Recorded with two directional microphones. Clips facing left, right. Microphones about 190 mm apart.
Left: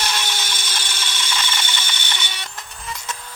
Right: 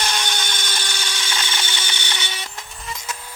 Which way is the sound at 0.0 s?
Centre (ahead or behind).